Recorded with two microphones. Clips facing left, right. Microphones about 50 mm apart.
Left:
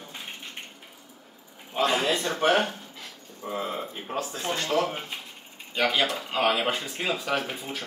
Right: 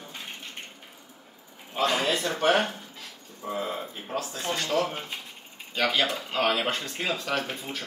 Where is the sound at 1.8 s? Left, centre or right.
Centre.